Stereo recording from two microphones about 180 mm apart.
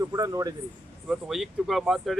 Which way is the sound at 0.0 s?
20° right (ahead or behind).